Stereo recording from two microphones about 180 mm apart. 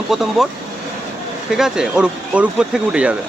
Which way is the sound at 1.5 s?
5° right (ahead or behind).